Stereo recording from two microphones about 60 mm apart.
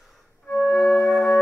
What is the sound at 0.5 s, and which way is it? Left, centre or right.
Music, left.